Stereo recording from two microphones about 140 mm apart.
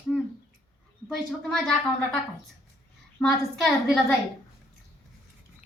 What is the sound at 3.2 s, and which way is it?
Speech, 5° left (ahead or behind).